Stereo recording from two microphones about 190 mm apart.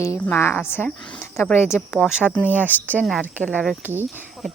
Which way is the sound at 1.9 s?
5° right (ahead or behind).